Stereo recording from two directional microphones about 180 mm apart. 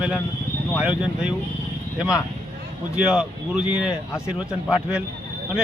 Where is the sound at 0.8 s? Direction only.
5° right (ahead or behind).